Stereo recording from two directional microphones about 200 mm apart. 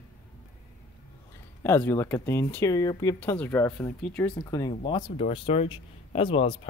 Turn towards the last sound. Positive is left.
turn(degrees=25)  # may be behind; listen again after turning